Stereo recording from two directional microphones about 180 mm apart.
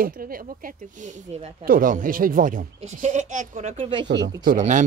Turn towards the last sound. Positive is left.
turn(degrees=-45)  # may be behind; listen again after turning